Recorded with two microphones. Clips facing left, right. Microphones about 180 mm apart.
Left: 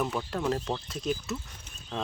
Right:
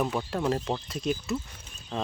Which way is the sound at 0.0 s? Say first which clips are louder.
Right 2 dB; 10° right (ahead or behind).